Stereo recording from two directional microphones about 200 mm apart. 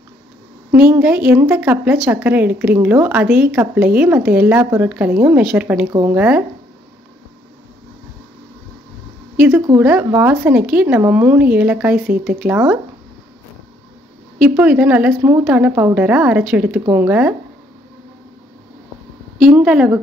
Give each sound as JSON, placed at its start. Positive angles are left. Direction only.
{"t": 0.7, "sound": "a woman's voice", "side_deg": -10}
{"t": 9.8, "sound": "a woman's voice", "side_deg": -10}
{"t": 14.5, "sound": "a woman's voice", "side_deg": -5}
{"t": 19.5, "sound": "a woman's voice", "side_deg": -5}